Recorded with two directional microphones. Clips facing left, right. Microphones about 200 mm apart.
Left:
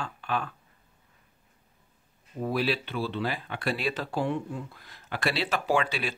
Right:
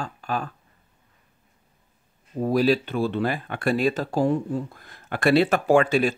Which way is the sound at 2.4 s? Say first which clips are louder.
Right 8 dB; 40° right (ahead or behind).